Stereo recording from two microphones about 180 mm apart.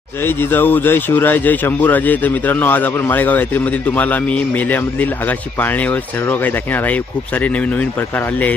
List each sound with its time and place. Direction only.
0.2 s speech: 10° left (ahead or behind)